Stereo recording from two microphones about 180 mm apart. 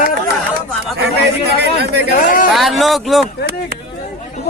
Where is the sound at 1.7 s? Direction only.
65° right (ahead or behind).